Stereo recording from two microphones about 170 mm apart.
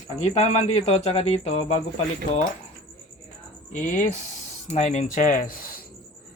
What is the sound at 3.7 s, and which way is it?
Speech, 50° left (ahead or behind).